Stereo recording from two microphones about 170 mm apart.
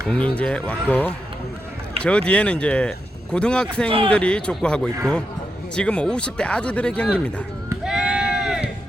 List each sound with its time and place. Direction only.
0.1 s speech: 5° left (ahead or behind)
3.8 s speech: 35° right (ahead or behind)
4.1 s speech: 5° left (ahead or behind)
7.9 s a sound: 5° right (ahead or behind)